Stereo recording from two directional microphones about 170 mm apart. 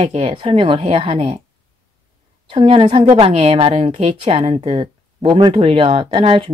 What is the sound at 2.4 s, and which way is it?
A woman's voice, 30° right (ahead or behind).